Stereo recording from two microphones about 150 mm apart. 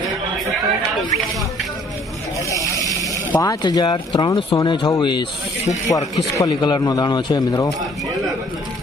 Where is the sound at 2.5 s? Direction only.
20° left (ahead or behind).